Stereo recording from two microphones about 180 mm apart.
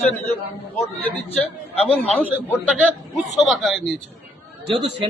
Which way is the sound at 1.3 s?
5° left (ahead or behind).